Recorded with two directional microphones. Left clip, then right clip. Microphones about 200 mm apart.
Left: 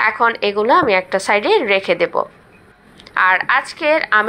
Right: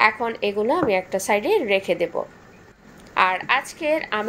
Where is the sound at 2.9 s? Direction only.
Centre (ahead or behind).